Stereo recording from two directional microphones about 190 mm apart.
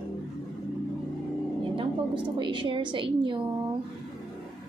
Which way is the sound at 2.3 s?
25° right (ahead or behind).